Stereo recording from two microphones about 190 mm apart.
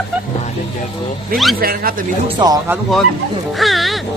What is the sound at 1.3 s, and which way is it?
Speech, centre (ahead or behind).